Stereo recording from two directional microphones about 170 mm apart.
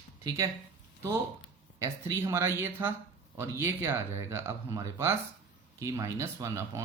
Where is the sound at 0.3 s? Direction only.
20° right (ahead or behind).